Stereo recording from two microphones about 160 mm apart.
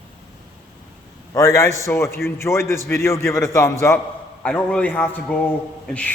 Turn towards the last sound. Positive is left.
turn(degrees=5)  # may be behind; listen again after turning